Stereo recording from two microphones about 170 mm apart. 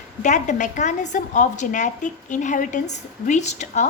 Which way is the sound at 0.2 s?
45° left (ahead or behind).